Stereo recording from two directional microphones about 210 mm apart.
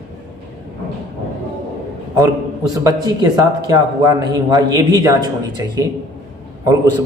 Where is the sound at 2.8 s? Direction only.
15° right (ahead or behind).